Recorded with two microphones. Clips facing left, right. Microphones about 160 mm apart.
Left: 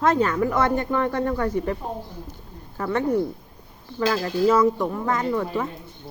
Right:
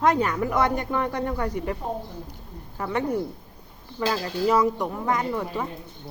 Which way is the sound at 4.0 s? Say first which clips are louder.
Left 4 dB; 20° right (ahead or behind).